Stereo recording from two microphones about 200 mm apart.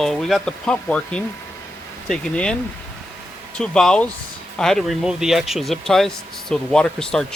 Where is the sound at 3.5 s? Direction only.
5° left (ahead or behind).